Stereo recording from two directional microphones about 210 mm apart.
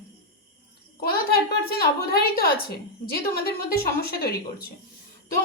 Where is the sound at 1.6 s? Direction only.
45° left (ahead or behind).